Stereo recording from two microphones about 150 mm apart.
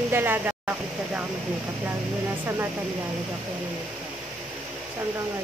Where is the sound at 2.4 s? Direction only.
15° right (ahead or behind).